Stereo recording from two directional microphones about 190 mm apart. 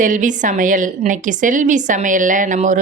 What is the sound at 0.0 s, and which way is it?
A woman's voice, 40° right (ahead or behind).